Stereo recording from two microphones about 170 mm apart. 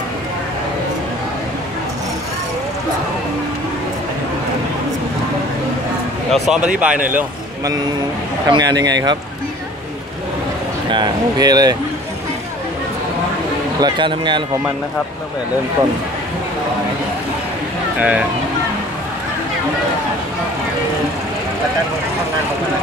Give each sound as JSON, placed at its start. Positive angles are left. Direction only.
{"t": 6.3, "sound": "speech", "side_deg": 0}
{"t": 8.5, "sound": "speech", "side_deg": -25}
{"t": 10.9, "sound": "speech", "side_deg": -25}
{"t": 13.7, "sound": "speech", "side_deg": -25}
{"t": 17.9, "sound": "speech", "side_deg": -10}